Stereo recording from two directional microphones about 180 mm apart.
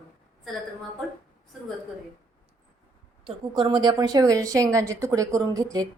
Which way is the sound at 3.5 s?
25° right (ahead or behind).